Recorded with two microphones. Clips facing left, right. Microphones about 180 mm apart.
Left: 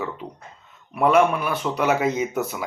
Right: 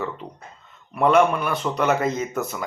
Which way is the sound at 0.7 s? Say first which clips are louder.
Even; 5° left (ahead or behind).